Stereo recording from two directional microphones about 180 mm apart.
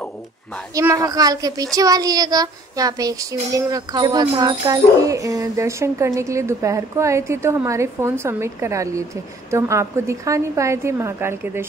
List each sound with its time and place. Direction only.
0.7 s a woman's voice: 20° right (ahead or behind)